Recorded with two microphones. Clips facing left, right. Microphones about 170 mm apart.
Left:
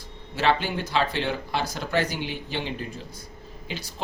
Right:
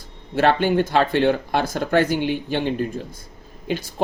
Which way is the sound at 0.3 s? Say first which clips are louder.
Right 7 dB; 55° right (ahead or behind).